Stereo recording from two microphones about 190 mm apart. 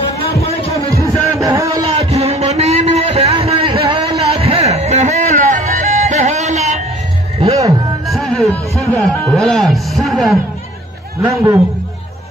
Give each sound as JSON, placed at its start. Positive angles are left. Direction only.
{"t": 1.0, "sound": "music", "side_deg": -15}
{"t": 1.9, "sound": "a sound", "side_deg": -30}
{"t": 8.1, "sound": "speech", "side_deg": 0}
{"t": 11.2, "sound": "a man's voice", "side_deg": -15}